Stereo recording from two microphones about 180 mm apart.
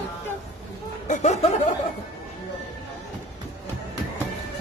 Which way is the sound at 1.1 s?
40° left (ahead or behind).